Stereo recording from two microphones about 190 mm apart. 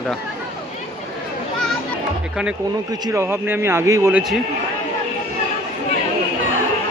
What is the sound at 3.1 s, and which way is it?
A man's voice, 15° right (ahead or behind).